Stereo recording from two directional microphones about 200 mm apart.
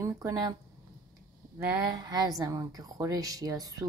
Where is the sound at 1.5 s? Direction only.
20° right (ahead or behind).